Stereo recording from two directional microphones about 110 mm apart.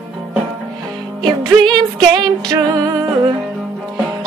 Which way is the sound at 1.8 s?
35° right (ahead or behind).